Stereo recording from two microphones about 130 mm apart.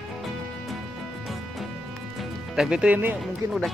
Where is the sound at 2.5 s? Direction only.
5° right (ahead or behind).